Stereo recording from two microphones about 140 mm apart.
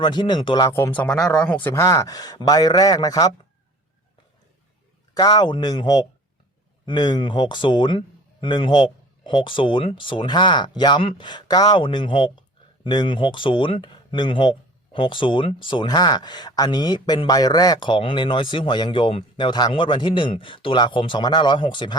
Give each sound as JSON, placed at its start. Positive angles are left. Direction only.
{"t": 0.0, "sound": "speech", "side_deg": 30}
{"t": 0.7, "sound": "speech", "side_deg": 15}
{"t": 5.1, "sound": "speech", "side_deg": 30}